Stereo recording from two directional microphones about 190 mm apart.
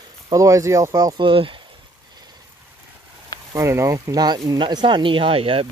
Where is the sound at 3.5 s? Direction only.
15° right (ahead or behind).